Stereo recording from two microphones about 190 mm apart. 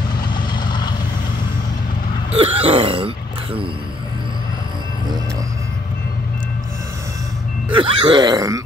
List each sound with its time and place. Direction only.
0.3 s vehicle: 25° left (ahead or behind)
2.3 s a sound: 30° right (ahead or behind)
7.7 s groan: 25° right (ahead or behind)